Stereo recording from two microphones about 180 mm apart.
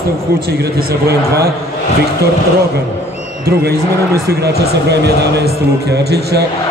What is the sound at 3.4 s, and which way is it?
Speech, 60° right (ahead or behind).